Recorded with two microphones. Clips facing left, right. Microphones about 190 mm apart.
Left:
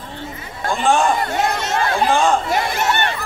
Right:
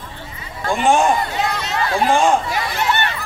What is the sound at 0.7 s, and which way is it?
Speech, 15° right (ahead or behind).